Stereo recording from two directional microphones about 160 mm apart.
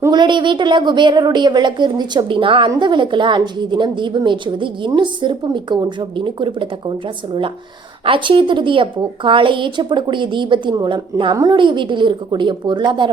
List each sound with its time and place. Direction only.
0.0 s a woman's voice: 25° right (ahead or behind)
8.0 s a woman's voice: 30° right (ahead or behind)